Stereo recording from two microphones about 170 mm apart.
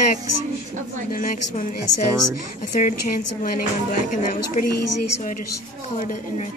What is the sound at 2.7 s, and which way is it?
A woman's voice, 50° left (ahead or behind).